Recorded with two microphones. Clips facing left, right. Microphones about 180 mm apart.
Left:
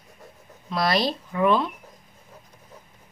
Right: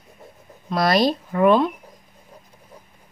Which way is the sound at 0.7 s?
45° right (ahead or behind).